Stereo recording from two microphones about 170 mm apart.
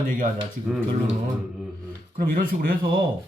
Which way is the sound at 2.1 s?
55° right (ahead or behind).